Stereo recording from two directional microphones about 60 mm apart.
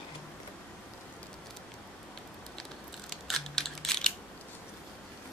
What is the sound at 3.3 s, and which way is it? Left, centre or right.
Computer keyboard, centre.